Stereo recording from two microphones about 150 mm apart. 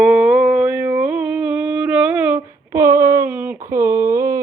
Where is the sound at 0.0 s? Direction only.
5° right (ahead or behind).